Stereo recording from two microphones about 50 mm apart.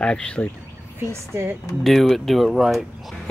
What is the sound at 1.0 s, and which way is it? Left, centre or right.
Speech, right.